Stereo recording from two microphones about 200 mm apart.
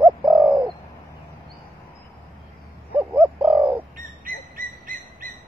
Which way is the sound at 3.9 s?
45° right (ahead or behind).